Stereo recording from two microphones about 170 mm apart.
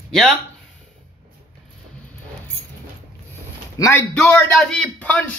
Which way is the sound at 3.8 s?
15° left (ahead or behind).